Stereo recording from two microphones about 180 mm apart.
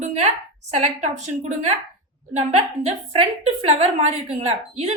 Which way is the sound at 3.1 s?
35° right (ahead or behind).